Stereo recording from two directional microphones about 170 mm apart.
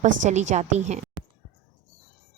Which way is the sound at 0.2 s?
45° right (ahead or behind).